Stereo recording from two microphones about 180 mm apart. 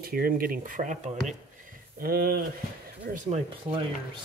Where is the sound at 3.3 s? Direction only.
30° right (ahead or behind).